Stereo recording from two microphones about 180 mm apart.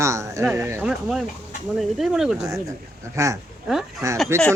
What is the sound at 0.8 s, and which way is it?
Speech, 5° right (ahead or behind).